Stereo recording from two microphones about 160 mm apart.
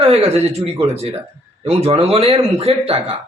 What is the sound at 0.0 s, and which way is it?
A man's voice, 40° right (ahead or behind).